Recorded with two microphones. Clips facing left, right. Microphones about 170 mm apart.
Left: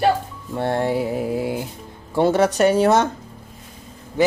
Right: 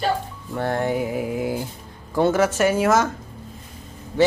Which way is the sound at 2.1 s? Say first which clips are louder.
Left 2 dB; 30° left (ahead or behind).